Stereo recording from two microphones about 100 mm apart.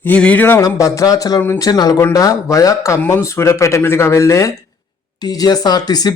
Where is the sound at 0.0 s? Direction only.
15° left (ahead or behind).